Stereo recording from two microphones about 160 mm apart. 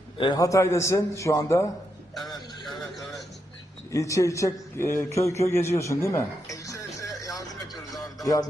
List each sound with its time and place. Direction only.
0.2 s a man's voice: 25° left (ahead or behind)
2.6 s a sound: centre (ahead or behind)
3.9 s a man's voice: 20° left (ahead or behind)
7.9 s music: 20° left (ahead or behind)